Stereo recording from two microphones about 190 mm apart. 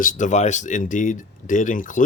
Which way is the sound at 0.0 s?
45° left (ahead or behind).